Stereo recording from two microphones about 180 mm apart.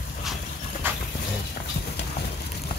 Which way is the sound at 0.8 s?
10° right (ahead or behind).